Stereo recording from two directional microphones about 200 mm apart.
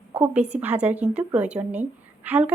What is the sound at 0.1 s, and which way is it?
A woman's voice, 5° right (ahead or behind).